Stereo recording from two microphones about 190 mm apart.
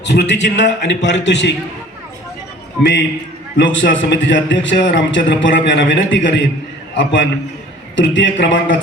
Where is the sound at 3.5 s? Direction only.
75° left (ahead or behind).